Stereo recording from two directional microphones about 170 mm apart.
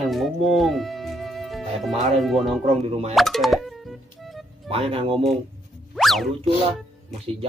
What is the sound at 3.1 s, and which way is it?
Speech, centre (ahead or behind).